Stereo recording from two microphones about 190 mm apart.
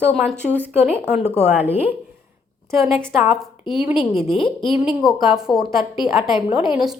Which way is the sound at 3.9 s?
25° left (ahead or behind).